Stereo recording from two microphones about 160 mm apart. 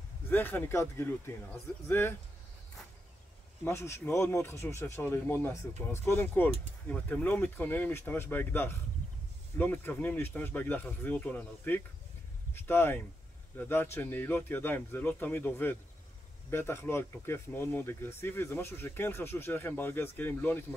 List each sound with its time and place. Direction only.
0.3 s speech: 15° left (ahead or behind)
3.6 s speech: 15° left (ahead or behind)